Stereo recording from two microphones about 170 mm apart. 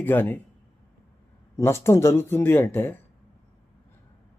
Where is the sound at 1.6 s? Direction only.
15° left (ahead or behind).